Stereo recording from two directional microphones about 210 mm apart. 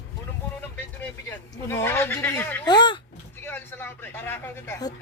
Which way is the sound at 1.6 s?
10° left (ahead or behind).